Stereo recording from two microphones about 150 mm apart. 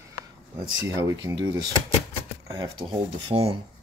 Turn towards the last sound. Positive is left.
turn(degrees=-40)  # may be behind; listen again after turning